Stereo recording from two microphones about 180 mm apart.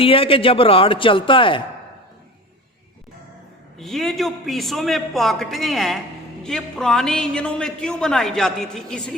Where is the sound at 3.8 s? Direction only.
Centre (ahead or behind).